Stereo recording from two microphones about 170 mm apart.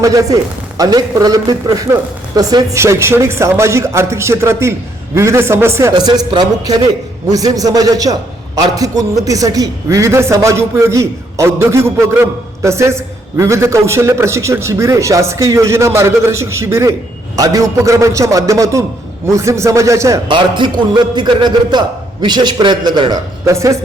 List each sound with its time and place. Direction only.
0.0 s a man's voice: 20° right (ahead or behind)